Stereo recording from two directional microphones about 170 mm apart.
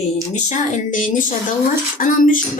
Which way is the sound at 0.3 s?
45° left (ahead or behind).